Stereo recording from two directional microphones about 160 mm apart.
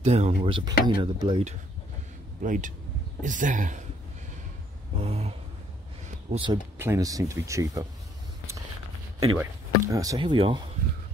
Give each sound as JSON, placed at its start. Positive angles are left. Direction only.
{"t": 0.0, "sound": "speech", "side_deg": -45}
{"t": 2.4, "sound": "speech", "side_deg": -55}
{"t": 4.9, "sound": "speech", "side_deg": -40}
{"t": 6.3, "sound": "speech", "side_deg": -30}
{"t": 6.8, "sound": "speech", "side_deg": -20}
{"t": 9.4, "sound": "speech", "side_deg": -20}